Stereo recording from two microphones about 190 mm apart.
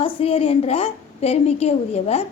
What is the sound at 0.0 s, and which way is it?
A woman's voice, 30° left (ahead or behind).